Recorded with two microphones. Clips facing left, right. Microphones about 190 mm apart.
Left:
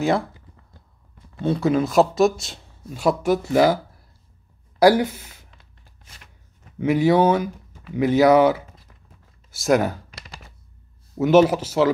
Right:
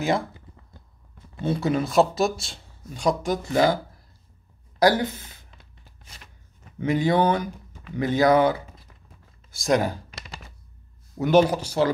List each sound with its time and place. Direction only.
1.4 s speech: centre (ahead or behind)
6.8 s speech: 5° left (ahead or behind)
11.1 s speech: 5° left (ahead or behind)